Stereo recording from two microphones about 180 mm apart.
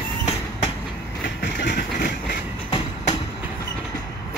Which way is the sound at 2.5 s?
30° left (ahead or behind).